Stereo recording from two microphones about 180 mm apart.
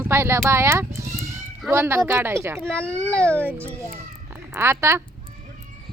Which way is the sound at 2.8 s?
15° right (ahead or behind).